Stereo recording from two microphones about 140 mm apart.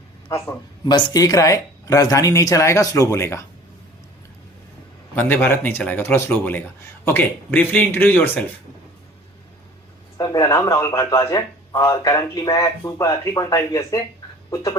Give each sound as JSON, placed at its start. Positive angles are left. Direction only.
{"t": 0.3, "sound": "speech", "side_deg": 25}
{"t": 5.1, "sound": "speech", "side_deg": 15}
{"t": 10.2, "sound": "speech", "side_deg": 30}